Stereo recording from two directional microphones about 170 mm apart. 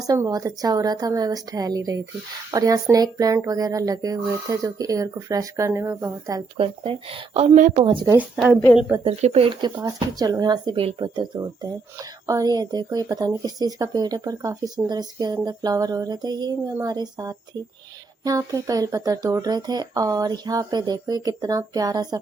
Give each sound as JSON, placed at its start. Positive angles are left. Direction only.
{"t": 0.1, "sound": "speech", "side_deg": -20}
{"t": 6.6, "sound": "speech", "side_deg": -35}
{"t": 7.8, "sound": "speech", "side_deg": -30}
{"t": 9.0, "sound": "speech", "side_deg": -35}